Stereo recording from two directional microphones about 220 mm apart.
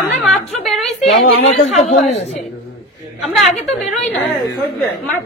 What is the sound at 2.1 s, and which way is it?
Speech, 30° left (ahead or behind).